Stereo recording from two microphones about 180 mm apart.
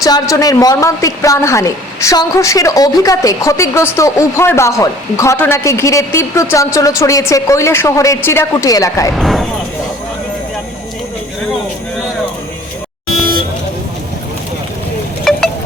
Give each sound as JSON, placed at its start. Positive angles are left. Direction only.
{"t": 0.0, "sound": "a woman's voice", "side_deg": 20}
{"t": 9.1, "sound": "speech", "side_deg": 0}
{"t": 13.1, "sound": "vehicle", "side_deg": -55}
{"t": 15.2, "sound": "a sound", "side_deg": 0}